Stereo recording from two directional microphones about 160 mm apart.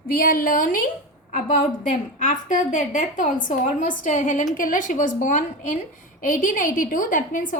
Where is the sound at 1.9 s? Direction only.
50° left (ahead or behind).